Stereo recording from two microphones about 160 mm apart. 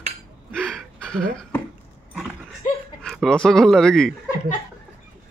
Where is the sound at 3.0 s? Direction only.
5° left (ahead or behind).